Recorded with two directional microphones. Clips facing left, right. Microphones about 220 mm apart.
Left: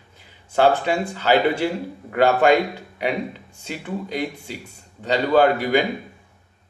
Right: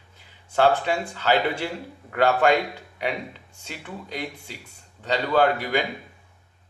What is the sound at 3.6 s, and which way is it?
A man's voice, 5° left (ahead or behind).